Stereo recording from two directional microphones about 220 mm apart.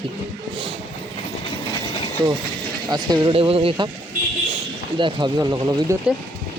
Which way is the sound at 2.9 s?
20° right (ahead or behind).